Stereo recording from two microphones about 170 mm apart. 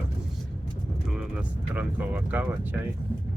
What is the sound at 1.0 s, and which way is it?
Speech, 5° right (ahead or behind).